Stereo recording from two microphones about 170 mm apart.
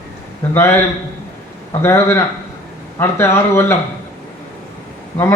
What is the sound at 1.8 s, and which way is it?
A man's voice, 15° left (ahead or behind).